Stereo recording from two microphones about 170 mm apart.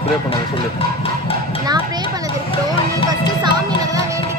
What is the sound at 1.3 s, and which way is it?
Music, 35° left (ahead or behind).